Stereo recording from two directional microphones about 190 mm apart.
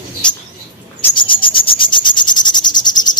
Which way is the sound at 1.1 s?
25° left (ahead or behind).